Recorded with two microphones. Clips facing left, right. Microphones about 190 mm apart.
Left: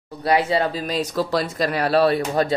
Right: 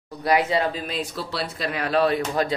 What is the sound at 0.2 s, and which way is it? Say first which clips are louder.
Speech: left 2 dB; 30° left (ahead or behind).